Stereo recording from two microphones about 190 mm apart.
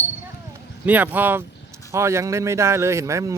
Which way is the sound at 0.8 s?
10° right (ahead or behind).